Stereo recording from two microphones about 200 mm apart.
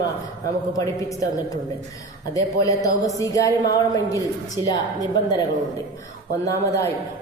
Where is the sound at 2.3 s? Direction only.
15° left (ahead or behind).